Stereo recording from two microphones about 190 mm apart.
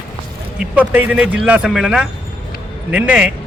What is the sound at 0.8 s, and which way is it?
A man's voice, 10° right (ahead or behind).